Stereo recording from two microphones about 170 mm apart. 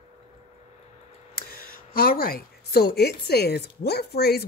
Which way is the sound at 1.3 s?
60° left (ahead or behind).